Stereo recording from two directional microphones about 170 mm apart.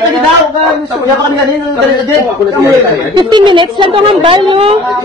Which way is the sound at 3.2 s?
25° right (ahead or behind).